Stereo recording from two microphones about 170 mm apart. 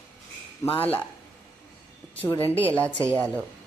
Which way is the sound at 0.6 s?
20° left (ahead or behind).